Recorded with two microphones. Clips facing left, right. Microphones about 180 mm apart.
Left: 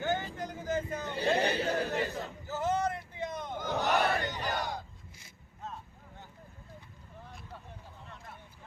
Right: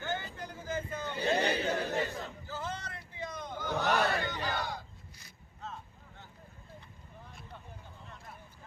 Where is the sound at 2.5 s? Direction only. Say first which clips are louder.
Left 12 dB; 20° left (ahead or behind).